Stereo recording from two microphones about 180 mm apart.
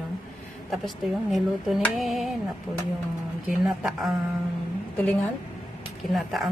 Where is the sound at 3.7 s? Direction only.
Centre (ahead or behind).